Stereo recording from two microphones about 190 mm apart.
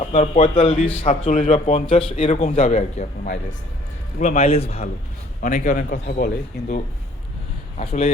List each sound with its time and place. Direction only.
0.0 s speech: 30° left (ahead or behind)
4.2 s speech: 35° left (ahead or behind)
5.4 s a man's voice: 45° left (ahead or behind)
7.8 s speech: 35° left (ahead or behind)